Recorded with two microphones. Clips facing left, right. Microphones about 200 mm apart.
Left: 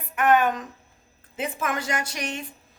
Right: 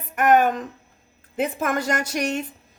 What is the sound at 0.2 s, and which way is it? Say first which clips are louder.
A woman's voice: right 3 dB; 40° right (ahead or behind).